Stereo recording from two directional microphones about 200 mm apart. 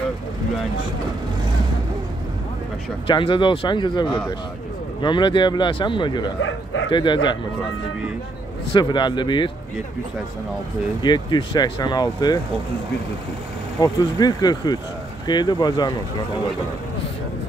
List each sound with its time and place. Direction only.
3.1 s speech: 25° left (ahead or behind)
8.7 s speech: 20° left (ahead or behind)
11.0 s speech: 20° left (ahead or behind)
13.7 s speech: 20° left (ahead or behind)